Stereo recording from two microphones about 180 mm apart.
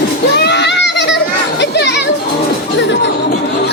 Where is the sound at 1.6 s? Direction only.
70° left (ahead or behind).